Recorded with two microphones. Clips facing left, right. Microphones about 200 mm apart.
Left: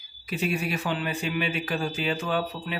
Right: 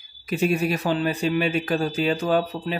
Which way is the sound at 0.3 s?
45° right (ahead or behind).